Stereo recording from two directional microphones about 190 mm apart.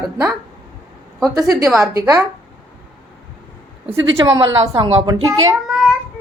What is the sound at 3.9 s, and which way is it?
Speech, 20° right (ahead or behind).